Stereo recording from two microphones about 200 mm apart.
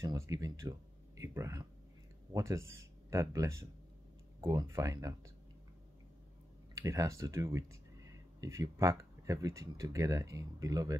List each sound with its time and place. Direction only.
0.0 s speech: 15° right (ahead or behind)
6.7 s speech: 15° right (ahead or behind)